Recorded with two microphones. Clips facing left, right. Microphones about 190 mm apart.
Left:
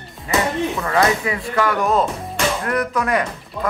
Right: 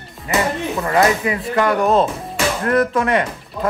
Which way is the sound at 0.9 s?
20° right (ahead or behind).